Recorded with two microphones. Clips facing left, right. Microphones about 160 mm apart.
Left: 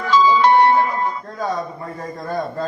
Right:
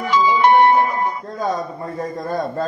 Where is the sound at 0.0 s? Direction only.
15° right (ahead or behind).